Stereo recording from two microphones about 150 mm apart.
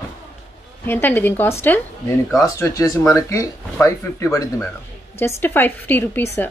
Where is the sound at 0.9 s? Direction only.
15° left (ahead or behind).